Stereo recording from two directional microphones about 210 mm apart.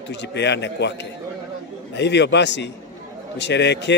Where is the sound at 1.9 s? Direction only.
55° left (ahead or behind).